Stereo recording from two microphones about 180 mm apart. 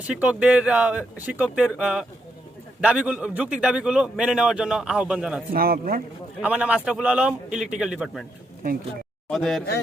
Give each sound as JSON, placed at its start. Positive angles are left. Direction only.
{"t": 0.1, "sound": "a man's voice", "side_deg": -10}
{"t": 5.5, "sound": "speech", "side_deg": -55}
{"t": 6.4, "sound": "a man's voice", "side_deg": -5}
{"t": 9.3, "sound": "a man's voice", "side_deg": 0}